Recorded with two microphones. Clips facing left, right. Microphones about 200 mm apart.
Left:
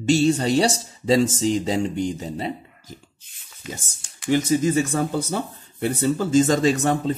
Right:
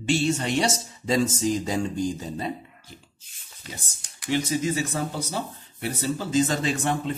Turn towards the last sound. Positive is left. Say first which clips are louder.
# left 6 dB
turn(degrees=40)  # may be behind; listen again after turning